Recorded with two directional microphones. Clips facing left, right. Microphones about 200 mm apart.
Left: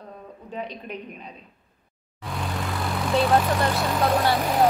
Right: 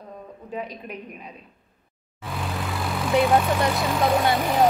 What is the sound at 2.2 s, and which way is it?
Vehicle, centre (ahead or behind).